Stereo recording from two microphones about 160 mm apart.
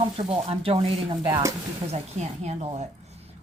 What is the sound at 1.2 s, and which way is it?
Speech, 20° right (ahead or behind).